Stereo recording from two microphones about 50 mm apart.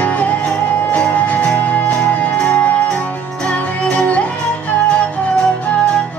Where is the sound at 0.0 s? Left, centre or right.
Left.